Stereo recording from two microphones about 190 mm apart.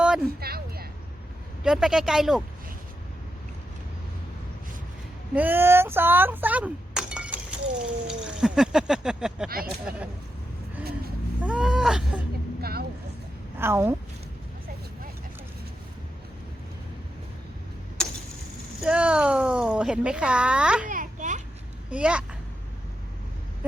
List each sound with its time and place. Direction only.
0.0 s a sound: 5° right (ahead or behind)
0.3 s speech: 55° right (ahead or behind)
1.6 s speech: 5° right (ahead or behind)
5.3 s speech: 10° right (ahead or behind)
9.5 s speech: 50° right (ahead or behind)
11.4 s speech: 5° right (ahead or behind)
13.6 s a woman's voice: 15° right (ahead or behind)
18.0 s a sound: 5° left (ahead or behind)
18.8 s speech: 5° right (ahead or behind)
20.8 s children playing: 45° right (ahead or behind)
21.8 s a child's voice: 5° right (ahead or behind)